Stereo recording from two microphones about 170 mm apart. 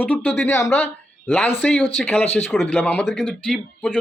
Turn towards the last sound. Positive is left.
turn(degrees=5)  # may be behind; listen again after turning